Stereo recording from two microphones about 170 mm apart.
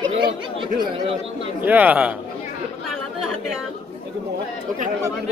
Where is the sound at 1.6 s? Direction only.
10° right (ahead or behind).